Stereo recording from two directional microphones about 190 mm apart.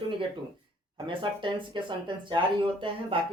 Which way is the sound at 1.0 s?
25° right (ahead or behind).